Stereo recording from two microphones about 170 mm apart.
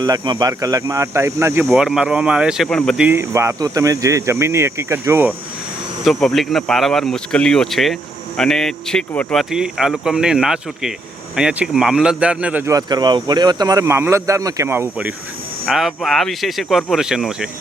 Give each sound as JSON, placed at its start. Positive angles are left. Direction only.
{"t": 0.0, "sound": "speech", "side_deg": -25}
{"t": 1.6, "sound": "speech", "side_deg": 0}
{"t": 3.0, "sound": "speech", "side_deg": -15}
{"t": 6.1, "sound": "speech", "side_deg": 0}
{"t": 12.7, "sound": "speech", "side_deg": -25}